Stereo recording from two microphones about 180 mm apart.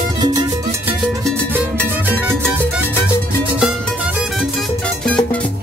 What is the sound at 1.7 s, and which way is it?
Music, 10° left (ahead or behind).